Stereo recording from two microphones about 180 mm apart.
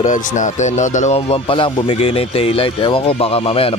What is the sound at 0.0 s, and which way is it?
Speech, 45° left (ahead or behind).